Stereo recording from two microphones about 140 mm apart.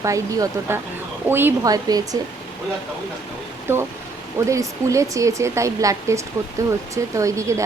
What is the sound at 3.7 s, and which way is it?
Speech, 15° right (ahead or behind).